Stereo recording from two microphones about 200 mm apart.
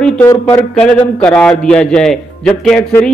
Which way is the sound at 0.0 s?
5° left (ahead or behind).